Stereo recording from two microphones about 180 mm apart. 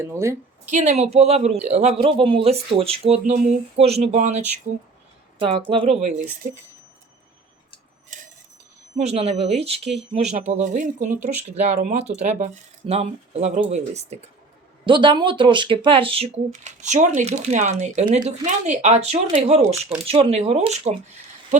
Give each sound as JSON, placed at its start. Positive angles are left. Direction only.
{"t": 0.0, "sound": "a woman's voice", "side_deg": -15}
{"t": 0.7, "sound": "speech", "side_deg": -40}
{"t": 5.4, "sound": "speech", "side_deg": -30}
{"t": 6.4, "sound": "speech", "side_deg": -50}
{"t": 9.0, "sound": "speech", "side_deg": -35}
{"t": 14.8, "sound": "speech", "side_deg": -25}